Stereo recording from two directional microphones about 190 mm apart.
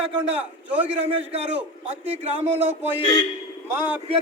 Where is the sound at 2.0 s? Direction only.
30° right (ahead or behind).